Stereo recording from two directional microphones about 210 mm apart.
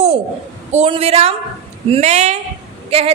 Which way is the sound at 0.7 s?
30° right (ahead or behind).